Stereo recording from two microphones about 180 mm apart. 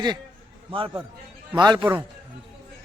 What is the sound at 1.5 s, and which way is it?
Speech, 25° right (ahead or behind).